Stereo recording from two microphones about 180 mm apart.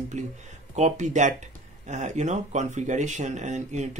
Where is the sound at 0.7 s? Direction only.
40° right (ahead or behind).